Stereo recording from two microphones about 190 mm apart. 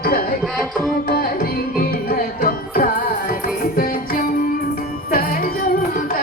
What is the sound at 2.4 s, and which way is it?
Music, 50° left (ahead or behind).